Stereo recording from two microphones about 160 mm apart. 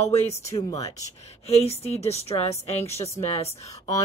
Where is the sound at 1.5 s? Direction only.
40° left (ahead or behind).